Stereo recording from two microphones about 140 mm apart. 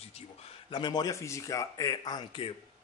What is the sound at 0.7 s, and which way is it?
Speech, 30° left (ahead or behind).